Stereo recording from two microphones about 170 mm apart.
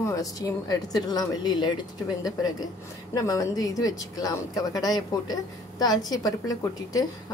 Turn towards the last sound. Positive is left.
turn(degrees=20)  # may be behind; listen again after turning